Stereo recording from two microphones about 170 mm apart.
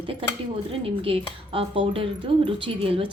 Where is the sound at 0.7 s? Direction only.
30° right (ahead or behind).